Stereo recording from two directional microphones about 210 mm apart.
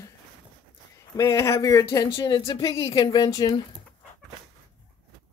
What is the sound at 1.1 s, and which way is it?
Speech, 15° left (ahead or behind).